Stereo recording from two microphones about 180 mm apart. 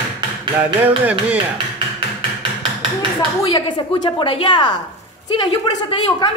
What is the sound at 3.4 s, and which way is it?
Speech, 25° left (ahead or behind).